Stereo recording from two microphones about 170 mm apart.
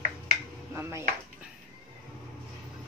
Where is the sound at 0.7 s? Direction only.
15° right (ahead or behind).